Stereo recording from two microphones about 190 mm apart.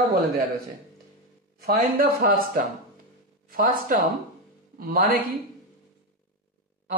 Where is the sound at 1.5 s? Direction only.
55° right (ahead or behind).